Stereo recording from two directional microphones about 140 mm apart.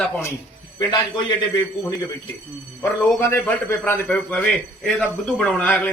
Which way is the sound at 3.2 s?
20° left (ahead or behind).